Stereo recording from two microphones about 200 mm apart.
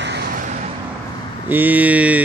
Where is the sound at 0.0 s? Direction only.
60° right (ahead or behind).